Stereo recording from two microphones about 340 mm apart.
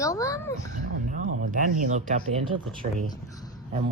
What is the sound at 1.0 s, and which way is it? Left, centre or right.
Speech, right.